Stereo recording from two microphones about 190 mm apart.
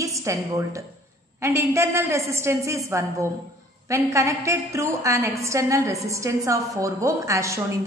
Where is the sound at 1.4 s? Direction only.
15° right (ahead or behind).